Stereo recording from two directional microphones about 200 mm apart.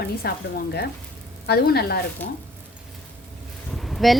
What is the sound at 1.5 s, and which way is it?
Speech, 50° left (ahead or behind).